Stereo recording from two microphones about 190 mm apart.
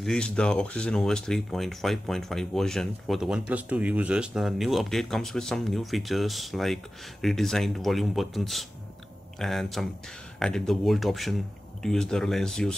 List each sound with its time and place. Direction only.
0.0 s speech: 5° left (ahead or behind)